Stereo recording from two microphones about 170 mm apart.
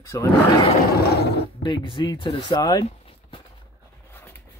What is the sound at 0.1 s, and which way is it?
Speech, 20° left (ahead or behind).